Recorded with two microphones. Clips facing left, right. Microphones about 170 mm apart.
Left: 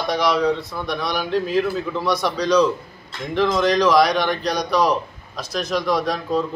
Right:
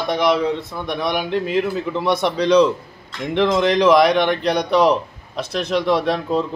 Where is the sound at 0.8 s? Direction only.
20° right (ahead or behind).